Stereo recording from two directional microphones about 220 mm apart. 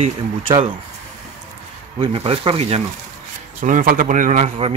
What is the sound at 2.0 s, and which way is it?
Speech, 25° right (ahead or behind).